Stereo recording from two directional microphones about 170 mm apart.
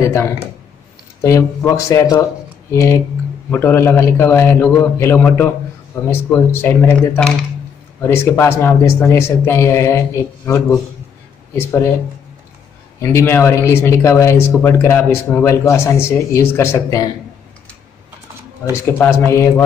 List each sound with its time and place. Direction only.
0.0 s a man's voice: 15° left (ahead or behind)
11.6 s a man's voice: 15° left (ahead or behind)
13.0 s a man's voice: 15° left (ahead or behind)
18.9 s a man's voice: 15° left (ahead or behind)